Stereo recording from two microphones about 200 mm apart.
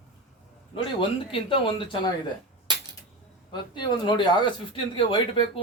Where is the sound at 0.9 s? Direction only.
25° left (ahead or behind).